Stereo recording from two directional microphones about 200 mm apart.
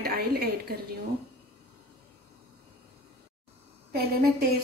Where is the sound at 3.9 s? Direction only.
50° right (ahead or behind).